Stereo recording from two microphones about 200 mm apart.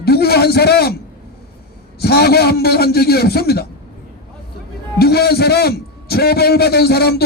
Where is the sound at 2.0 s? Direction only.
50° left (ahead or behind).